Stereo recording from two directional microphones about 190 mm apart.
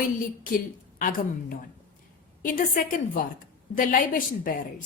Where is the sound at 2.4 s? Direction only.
45° left (ahead or behind).